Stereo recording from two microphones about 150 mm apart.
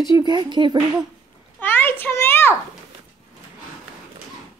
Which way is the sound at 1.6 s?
15° left (ahead or behind).